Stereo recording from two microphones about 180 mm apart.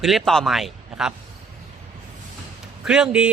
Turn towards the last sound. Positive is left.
turn(degrees=-5)  # may be behind; listen again after turning